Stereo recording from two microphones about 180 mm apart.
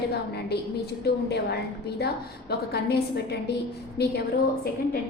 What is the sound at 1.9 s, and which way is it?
A woman's voice, 65° left (ahead or behind).